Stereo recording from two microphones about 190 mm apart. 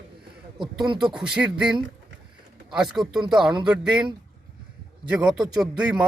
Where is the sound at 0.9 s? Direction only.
25° right (ahead or behind).